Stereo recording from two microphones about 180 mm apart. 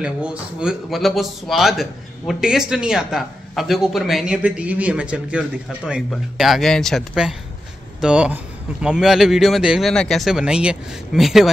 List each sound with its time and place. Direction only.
0.0 s speech: 5° right (ahead or behind)